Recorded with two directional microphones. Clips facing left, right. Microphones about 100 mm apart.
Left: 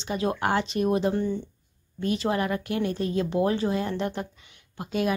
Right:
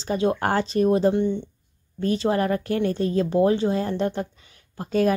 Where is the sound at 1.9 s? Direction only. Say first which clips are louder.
Right 4 dB; 35° right (ahead or behind).